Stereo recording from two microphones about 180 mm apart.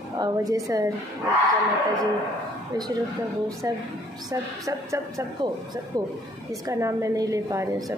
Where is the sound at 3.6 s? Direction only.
20° right (ahead or behind).